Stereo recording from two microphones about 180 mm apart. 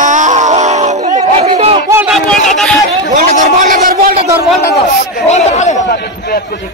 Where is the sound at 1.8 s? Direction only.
15° right (ahead or behind).